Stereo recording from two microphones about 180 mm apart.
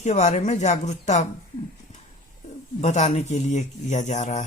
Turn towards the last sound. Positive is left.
turn(degrees=40)  # may be behind; listen again after turning